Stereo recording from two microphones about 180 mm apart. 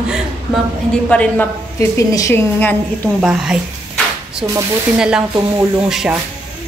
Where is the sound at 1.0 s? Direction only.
5° left (ahead or behind).